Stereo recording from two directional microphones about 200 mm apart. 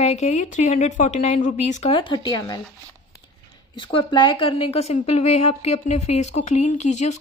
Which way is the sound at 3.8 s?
25° left (ahead or behind).